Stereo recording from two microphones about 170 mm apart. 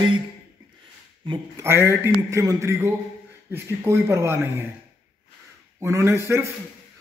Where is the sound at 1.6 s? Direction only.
15° right (ahead or behind).